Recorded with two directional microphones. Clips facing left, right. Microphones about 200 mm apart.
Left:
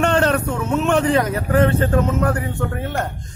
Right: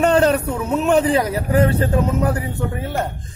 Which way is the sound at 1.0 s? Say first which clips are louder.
Even; 35° right (ahead or behind).